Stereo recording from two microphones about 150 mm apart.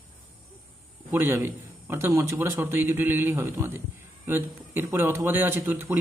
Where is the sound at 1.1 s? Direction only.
15° right (ahead or behind).